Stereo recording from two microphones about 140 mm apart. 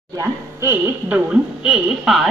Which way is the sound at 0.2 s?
20° right (ahead or behind).